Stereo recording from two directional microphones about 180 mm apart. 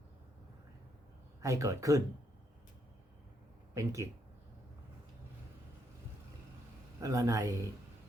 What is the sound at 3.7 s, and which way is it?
Speech, 15° right (ahead or behind).